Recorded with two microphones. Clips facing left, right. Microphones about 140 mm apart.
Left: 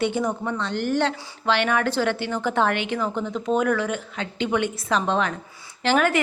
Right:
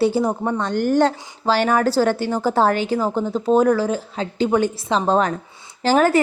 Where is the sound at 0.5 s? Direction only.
45° right (ahead or behind).